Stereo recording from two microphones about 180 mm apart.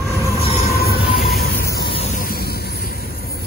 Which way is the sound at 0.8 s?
60° left (ahead or behind).